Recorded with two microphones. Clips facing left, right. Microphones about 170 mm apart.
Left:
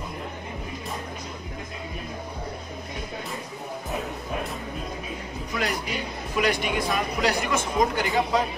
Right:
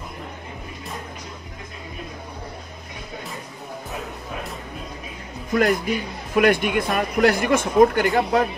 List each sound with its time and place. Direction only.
5.5 s speech: 50° right (ahead or behind)